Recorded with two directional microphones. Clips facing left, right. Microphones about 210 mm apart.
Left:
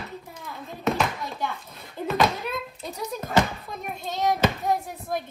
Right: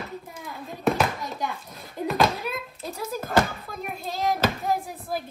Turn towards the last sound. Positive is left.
turn(degrees=0)  # may be behind; listen again after turning